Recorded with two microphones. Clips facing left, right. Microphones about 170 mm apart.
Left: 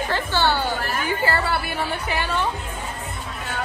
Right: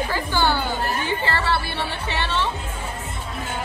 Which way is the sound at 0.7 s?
25° right (ahead or behind).